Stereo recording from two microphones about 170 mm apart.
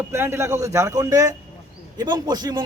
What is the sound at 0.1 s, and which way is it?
A man's voice, 15° right (ahead or behind).